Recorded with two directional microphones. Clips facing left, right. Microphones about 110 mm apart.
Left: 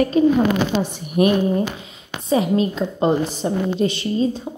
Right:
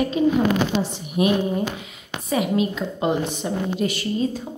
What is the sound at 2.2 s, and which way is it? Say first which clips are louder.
A woman's voice: left 3 dB; 30° left (ahead or behind).